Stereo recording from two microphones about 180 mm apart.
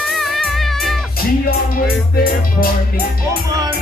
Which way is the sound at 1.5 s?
55° left (ahead or behind).